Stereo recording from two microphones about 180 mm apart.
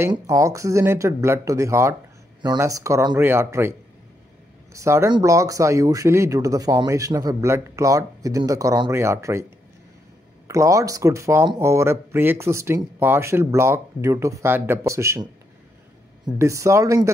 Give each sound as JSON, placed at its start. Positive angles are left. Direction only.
{"t": 0.1, "sound": "speech", "side_deg": -20}
{"t": 4.7, "sound": "speech", "side_deg": -15}
{"t": 10.5, "sound": "speech", "side_deg": -15}
{"t": 16.3, "sound": "speech", "side_deg": -15}